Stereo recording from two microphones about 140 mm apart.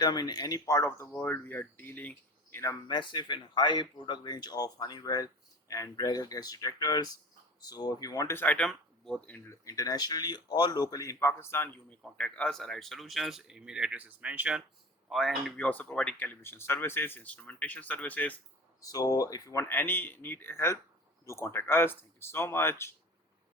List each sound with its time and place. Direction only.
0.0 s speech: 30° left (ahead or behind)
2.8 s speech: 35° left (ahead or behind)
8.4 s speech: 10° left (ahead or behind)
9.6 s speech: 25° left (ahead or behind)
18.8 s speech: 25° left (ahead or behind)